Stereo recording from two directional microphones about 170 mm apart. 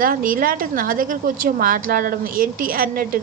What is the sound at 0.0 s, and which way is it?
A woman's voice, 55° right (ahead or behind).